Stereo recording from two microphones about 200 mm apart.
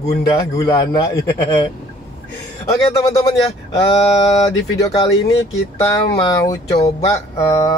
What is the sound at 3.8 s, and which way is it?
Speech, 30° left (ahead or behind).